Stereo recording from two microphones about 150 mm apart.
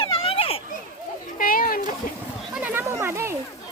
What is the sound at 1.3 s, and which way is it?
Speech, 70° left (ahead or behind).